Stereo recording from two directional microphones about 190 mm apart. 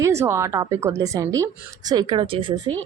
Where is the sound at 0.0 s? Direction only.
15° right (ahead or behind).